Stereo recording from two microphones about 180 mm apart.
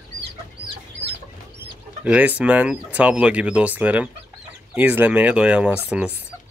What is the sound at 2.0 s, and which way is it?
Speech, 10° right (ahead or behind).